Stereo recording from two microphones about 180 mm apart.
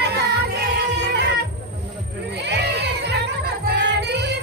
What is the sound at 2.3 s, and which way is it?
Music, 70° right (ahead or behind).